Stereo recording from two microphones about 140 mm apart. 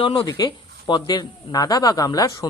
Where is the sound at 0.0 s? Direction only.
40° left (ahead or behind).